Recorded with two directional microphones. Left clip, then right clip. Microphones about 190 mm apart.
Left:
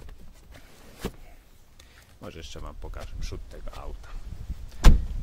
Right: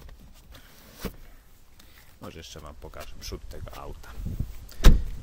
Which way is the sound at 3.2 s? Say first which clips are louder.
Right 2 dB; 15° right (ahead or behind).